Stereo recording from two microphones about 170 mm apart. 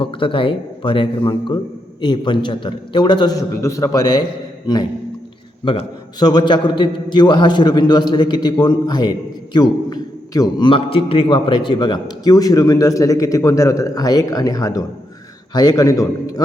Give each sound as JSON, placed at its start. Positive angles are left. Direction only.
{"t": 0.0, "sound": "a man's voice", "side_deg": 30}
{"t": 5.6, "sound": "a man's voice", "side_deg": 25}